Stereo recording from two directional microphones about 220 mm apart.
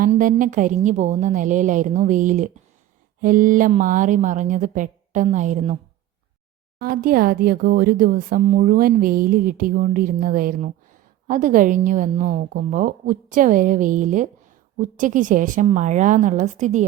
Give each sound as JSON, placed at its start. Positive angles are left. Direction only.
{"t": 0.0, "sound": "speech", "side_deg": -40}
{"t": 6.7, "sound": "speech", "side_deg": -40}